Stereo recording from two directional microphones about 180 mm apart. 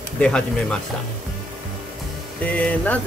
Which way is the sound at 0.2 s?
5° left (ahead or behind).